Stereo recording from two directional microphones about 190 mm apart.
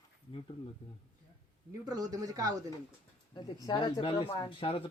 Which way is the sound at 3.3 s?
20° left (ahead or behind).